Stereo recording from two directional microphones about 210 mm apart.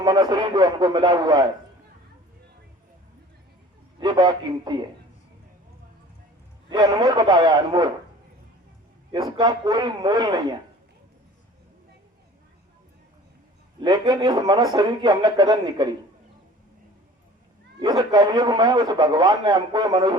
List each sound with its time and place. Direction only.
0.0 s a man's voice: 20° right (ahead or behind)
4.0 s a man's voice: 20° right (ahead or behind)
6.7 s a man's voice: 20° right (ahead or behind)
9.1 s a man's voice: 20° right (ahead or behind)
13.8 s a man's voice: 20° right (ahead or behind)
17.7 s a man's voice: 20° right (ahead or behind)